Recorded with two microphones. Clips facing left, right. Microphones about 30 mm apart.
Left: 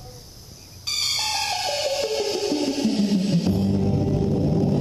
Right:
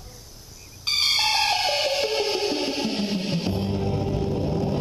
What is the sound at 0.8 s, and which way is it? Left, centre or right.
Music, right.